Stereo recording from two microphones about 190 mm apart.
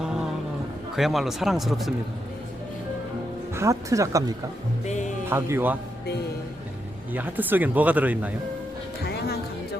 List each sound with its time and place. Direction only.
0.0 s music: 5° right (ahead or behind)
0.9 s speech: centre (ahead or behind)
3.5 s speech: 15° right (ahead or behind)
4.9 s music: 40° left (ahead or behind)
5.3 s speech: 10° right (ahead or behind)
7.1 s speech: 10° right (ahead or behind)
9.0 s music: 55° left (ahead or behind)